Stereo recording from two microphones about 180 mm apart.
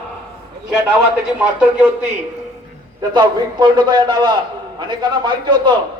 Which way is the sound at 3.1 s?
25° right (ahead or behind).